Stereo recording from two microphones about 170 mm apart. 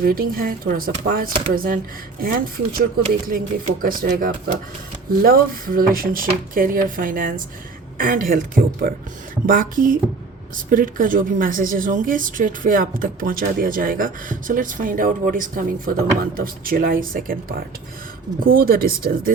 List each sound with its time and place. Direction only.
0.0 s speech: 60° right (ahead or behind)